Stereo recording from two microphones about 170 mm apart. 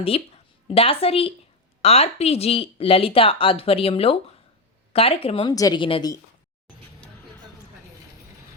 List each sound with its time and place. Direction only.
0.1 s speech: 35° left (ahead or behind)